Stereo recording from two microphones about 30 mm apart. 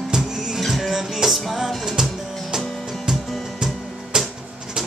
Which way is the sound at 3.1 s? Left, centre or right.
Centre.